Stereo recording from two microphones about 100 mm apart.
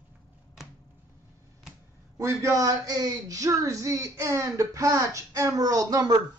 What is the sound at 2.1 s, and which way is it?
Speech, 30° right (ahead or behind).